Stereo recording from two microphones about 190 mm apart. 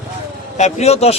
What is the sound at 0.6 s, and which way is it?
Speech, 35° left (ahead or behind).